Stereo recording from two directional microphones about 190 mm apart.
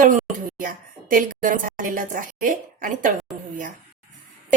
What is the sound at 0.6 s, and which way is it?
A woman's voice, 45° right (ahead or behind).